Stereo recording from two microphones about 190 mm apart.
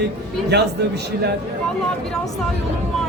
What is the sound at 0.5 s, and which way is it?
Speech, 60° right (ahead or behind).